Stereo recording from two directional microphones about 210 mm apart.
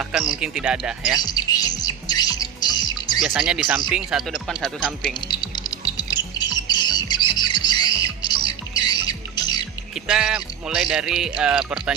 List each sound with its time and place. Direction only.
0.0 s speech: centre (ahead or behind)
1.2 s music: 20° left (ahead or behind)
3.2 s speech: 5° right (ahead or behind)
5.3 s music: 20° left (ahead or behind)
9.9 s speech: 5° right (ahead or behind)